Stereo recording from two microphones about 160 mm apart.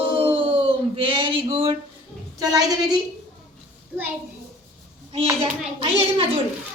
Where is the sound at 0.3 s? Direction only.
35° right (ahead or behind).